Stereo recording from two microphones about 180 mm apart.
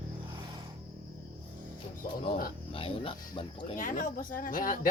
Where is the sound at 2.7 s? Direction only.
30° left (ahead or behind).